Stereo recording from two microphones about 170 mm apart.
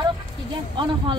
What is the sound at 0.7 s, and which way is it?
Speech, 30° right (ahead or behind).